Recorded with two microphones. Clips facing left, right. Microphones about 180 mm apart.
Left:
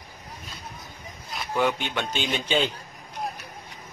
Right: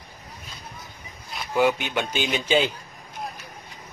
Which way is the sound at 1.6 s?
10° right (ahead or behind).